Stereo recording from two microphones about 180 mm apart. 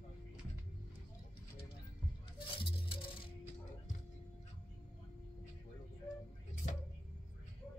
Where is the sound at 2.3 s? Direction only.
25° left (ahead or behind).